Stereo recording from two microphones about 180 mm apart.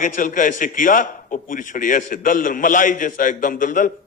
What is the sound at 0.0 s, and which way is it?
Speech, 45° left (ahead or behind).